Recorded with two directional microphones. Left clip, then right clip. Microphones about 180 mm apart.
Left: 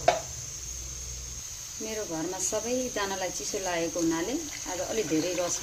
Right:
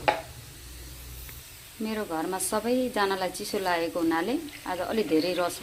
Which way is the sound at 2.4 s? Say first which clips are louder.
Right 2 dB; 10° right (ahead or behind).